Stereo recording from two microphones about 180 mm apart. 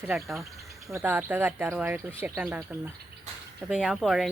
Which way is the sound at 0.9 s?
10° right (ahead or behind).